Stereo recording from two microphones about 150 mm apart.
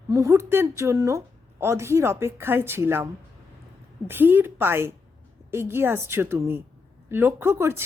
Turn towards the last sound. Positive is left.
turn(degrees=-15)  # may be behind; listen again after turning